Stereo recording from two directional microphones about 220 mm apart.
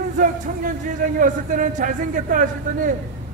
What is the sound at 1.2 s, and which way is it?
A man's voice, 35° right (ahead or behind).